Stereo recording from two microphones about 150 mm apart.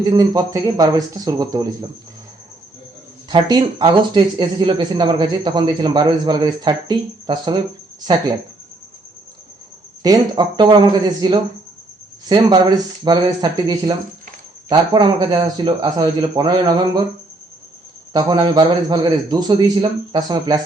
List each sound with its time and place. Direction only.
0.0 s speech: 25° right (ahead or behind)
3.2 s speech: 30° right (ahead or behind)
10.0 s speech: 25° right (ahead or behind)
18.1 s speech: 30° right (ahead or behind)